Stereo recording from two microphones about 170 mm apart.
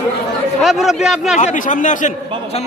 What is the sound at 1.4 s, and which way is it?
Speech, 45° left (ahead or behind).